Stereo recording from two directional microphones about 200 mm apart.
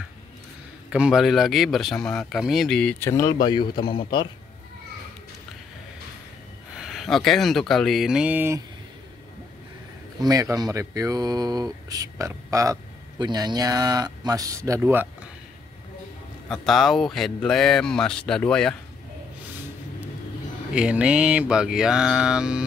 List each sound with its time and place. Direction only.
0.8 s a man's voice: 5° right (ahead or behind); by 4.3 s 25° left (ahead or behind)
6.8 s a man's voice: centre (ahead or behind)
10.2 s speech: 20° right (ahead or behind)
16.4 s a man's voice: centre (ahead or behind)
20.7 s a man's voice: 5° right (ahead or behind)